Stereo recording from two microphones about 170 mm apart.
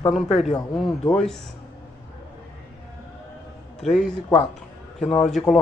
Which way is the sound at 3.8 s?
Centre (ahead or behind).